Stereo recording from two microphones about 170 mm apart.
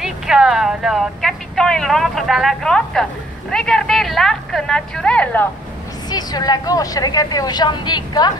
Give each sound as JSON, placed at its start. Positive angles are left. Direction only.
{"t": 0.0, "sound": "speech", "side_deg": -5}
{"t": 6.0, "sound": "a woman's voice", "side_deg": 25}